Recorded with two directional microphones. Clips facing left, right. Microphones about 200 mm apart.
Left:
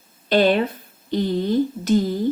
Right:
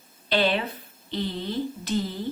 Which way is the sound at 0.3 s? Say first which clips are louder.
Left 7 dB; 45° left (ahead or behind).